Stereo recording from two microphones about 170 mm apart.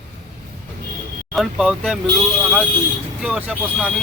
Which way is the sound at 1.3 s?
Centre (ahead or behind).